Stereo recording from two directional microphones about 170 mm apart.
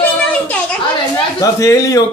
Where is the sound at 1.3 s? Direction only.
20° left (ahead or behind).